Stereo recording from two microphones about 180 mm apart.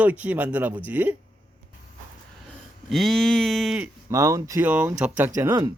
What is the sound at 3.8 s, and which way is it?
Speech, 15° right (ahead or behind).